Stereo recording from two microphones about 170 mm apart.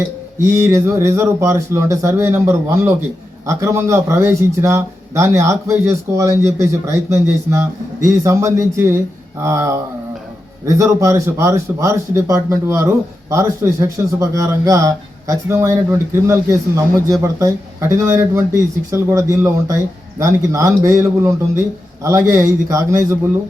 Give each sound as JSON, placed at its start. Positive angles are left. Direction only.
{"t": 0.3, "sound": "speech", "side_deg": -15}